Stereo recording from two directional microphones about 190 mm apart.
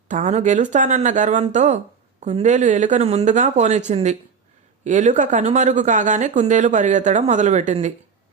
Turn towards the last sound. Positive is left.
turn(degrees=-35)  # may be behind; listen again after turning